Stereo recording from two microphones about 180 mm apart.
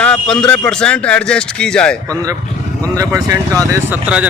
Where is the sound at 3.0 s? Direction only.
20° right (ahead or behind).